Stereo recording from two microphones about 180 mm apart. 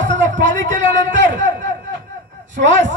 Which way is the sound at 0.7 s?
90° right.